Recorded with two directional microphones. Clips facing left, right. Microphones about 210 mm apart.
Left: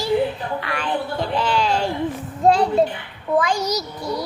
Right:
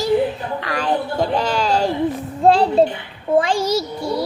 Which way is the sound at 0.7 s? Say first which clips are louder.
Right 6 dB; 40° right (ahead or behind).